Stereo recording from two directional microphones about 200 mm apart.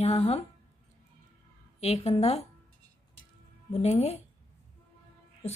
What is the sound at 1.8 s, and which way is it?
Speech, 35° left (ahead or behind).